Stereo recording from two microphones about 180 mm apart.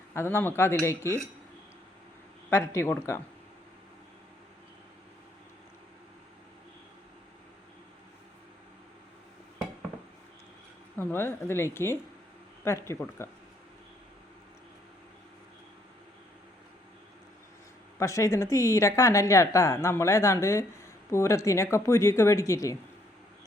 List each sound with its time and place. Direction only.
0.1 s a woman's voice: 15° left (ahead or behind)
2.5 s a woman's voice: 15° left (ahead or behind)
10.9 s a woman's voice: 10° left (ahead or behind)
18.0 s a woman's voice: 15° left (ahead or behind)